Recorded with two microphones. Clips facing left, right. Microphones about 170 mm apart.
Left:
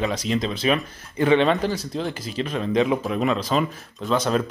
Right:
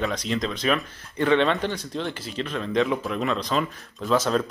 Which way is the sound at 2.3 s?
10° left (ahead or behind).